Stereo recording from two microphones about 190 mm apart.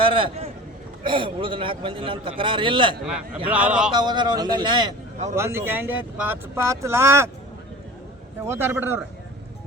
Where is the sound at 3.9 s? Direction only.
25° right (ahead or behind).